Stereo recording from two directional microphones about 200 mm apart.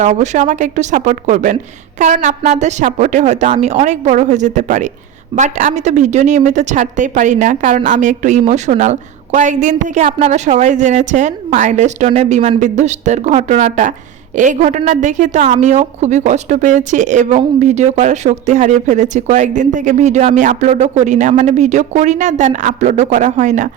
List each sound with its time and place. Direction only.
0.0 s a woman's voice: 35° right (ahead or behind)